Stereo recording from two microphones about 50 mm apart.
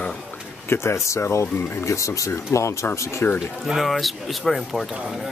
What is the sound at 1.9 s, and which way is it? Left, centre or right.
Speech, left.